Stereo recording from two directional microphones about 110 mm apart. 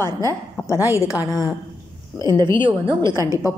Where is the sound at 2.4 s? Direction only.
45° right (ahead or behind).